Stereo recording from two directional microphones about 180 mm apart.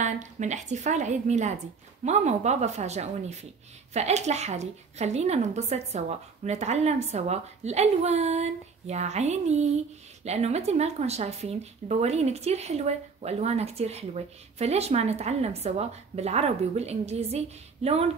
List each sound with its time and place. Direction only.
0.0 s speech: 40° right (ahead or behind)